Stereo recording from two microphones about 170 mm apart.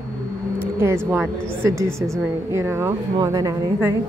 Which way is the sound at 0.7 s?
15° right (ahead or behind).